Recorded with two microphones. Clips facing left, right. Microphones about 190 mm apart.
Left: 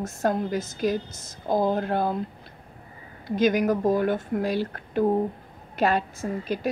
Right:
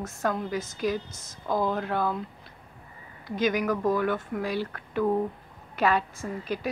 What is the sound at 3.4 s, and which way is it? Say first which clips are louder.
A woman's voice: left 4 dB; 45° left (ahead or behind).